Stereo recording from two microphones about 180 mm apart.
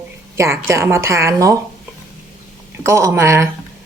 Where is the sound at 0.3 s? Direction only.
15° right (ahead or behind).